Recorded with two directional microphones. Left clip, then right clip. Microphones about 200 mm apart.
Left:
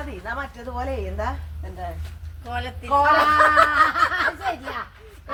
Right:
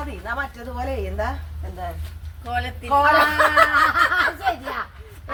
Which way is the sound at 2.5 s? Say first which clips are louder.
Right 2 dB; 5° right (ahead or behind).